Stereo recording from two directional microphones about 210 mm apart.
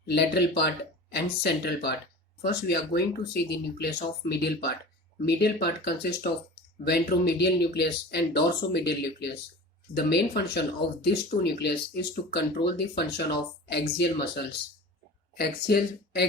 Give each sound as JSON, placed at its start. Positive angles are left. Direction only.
{"t": 0.0, "sound": "speech", "side_deg": 50}